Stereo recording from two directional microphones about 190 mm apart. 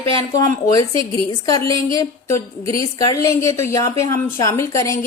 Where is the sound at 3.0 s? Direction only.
20° left (ahead or behind).